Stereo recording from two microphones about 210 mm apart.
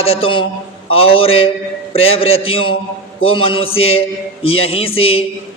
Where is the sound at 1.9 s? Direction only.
25° left (ahead or behind).